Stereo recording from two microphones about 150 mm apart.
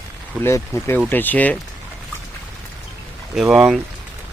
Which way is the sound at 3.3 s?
5° right (ahead or behind).